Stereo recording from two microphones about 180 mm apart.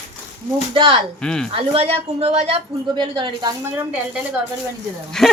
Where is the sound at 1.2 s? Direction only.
5° left (ahead or behind).